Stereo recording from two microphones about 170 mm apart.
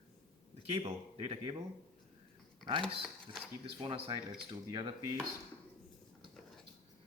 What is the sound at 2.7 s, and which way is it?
Speech, 30° right (ahead or behind).